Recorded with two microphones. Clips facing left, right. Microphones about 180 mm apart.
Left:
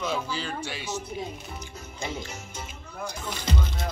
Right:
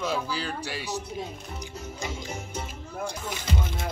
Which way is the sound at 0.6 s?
35° right (ahead or behind).